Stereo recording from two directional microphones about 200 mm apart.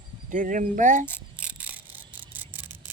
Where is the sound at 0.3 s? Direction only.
40° right (ahead or behind).